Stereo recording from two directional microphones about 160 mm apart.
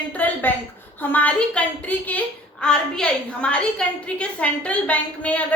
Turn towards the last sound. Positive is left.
turn(degrees=10)  # may be behind; listen again after turning